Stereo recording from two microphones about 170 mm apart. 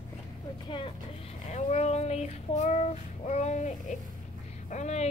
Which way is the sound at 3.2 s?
45° left (ahead or behind).